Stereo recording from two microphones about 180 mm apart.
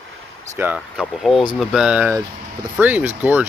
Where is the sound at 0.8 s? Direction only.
Centre (ahead or behind).